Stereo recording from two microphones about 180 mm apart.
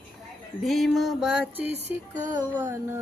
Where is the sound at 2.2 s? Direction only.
10° right (ahead or behind).